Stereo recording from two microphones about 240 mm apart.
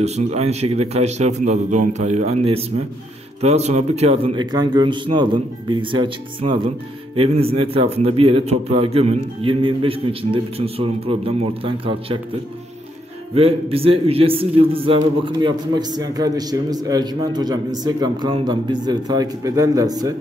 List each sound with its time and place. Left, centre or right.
0.0 s a man's voice: right
13.3 s a man's voice: right